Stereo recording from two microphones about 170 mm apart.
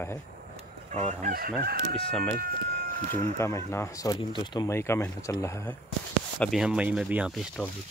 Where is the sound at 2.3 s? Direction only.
55° right (ahead or behind).